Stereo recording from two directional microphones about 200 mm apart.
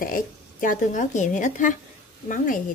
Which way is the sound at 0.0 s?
45° left (ahead or behind).